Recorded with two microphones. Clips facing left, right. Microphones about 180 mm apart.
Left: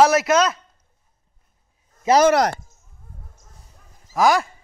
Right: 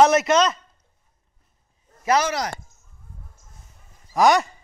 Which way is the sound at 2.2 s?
60° left (ahead or behind).